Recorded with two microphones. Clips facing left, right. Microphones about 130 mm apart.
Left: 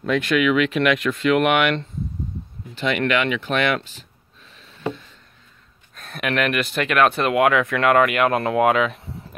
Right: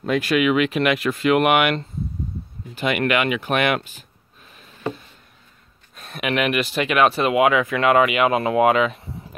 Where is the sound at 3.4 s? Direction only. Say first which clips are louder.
Right 1 dB; 50° right (ahead or behind).